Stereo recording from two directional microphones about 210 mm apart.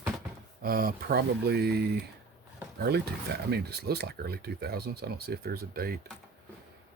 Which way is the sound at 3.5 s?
50° right (ahead or behind).